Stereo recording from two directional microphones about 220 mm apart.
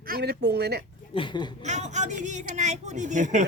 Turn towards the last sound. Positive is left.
turn(degrees=-35)  # may be behind; listen again after turning